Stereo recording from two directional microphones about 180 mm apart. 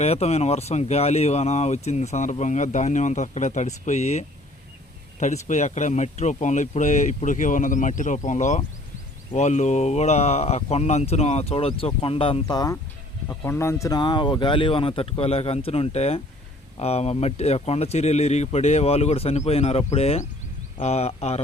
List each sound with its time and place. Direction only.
0.0 s speech: 35° left (ahead or behind)